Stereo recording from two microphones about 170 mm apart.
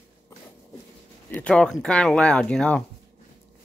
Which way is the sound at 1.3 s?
5° left (ahead or behind).